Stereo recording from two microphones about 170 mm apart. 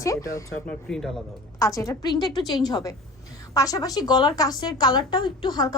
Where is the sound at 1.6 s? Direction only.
20° left (ahead or behind).